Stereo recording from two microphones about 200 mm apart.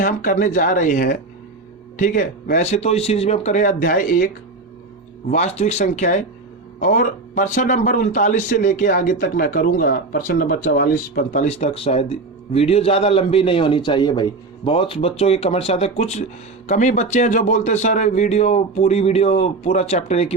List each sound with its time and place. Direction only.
0.0 s a man's voice: 40° left (ahead or behind)
5.3 s a man's voice: 35° left (ahead or behind)